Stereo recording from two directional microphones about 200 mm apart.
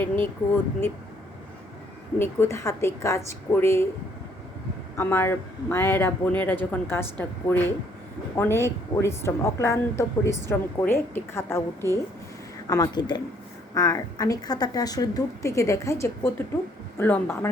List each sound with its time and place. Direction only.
0.0 s speech: 10° left (ahead or behind)
2.1 s speech: 10° left (ahead or behind)
4.9 s speech: 10° left (ahead or behind)